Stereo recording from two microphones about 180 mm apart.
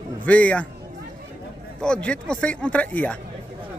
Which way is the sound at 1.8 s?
5° left (ahead or behind).